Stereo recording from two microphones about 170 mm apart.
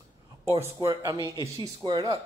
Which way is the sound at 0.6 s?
15° right (ahead or behind).